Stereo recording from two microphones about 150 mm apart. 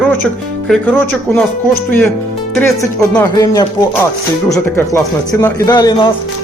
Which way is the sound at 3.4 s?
25° left (ahead or behind).